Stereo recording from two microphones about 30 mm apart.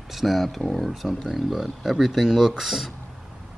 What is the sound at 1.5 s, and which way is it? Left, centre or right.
Speech, centre.